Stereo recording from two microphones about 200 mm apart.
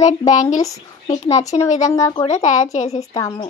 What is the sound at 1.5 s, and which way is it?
Speech, 35° left (ahead or behind).